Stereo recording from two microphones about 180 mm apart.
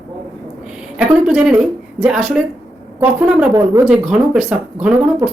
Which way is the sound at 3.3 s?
15° right (ahead or behind).